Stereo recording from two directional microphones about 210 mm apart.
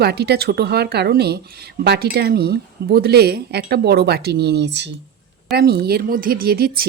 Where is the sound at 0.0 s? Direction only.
50° right (ahead or behind).